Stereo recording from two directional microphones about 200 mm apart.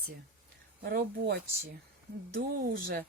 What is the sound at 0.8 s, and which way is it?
Speech, 55° right (ahead or behind).